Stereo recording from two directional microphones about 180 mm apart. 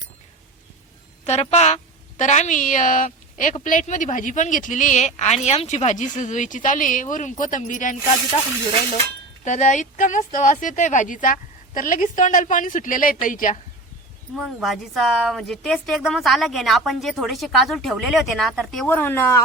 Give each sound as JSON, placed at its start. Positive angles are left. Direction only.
{"t": 1.2, "sound": "a woman's voice", "side_deg": 35}
{"t": 9.4, "sound": "a woman's voice", "side_deg": 40}
{"t": 14.3, "sound": "a woman's voice", "side_deg": 0}